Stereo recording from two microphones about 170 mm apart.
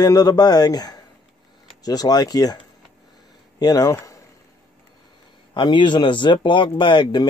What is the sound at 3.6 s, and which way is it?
Speech, 20° left (ahead or behind).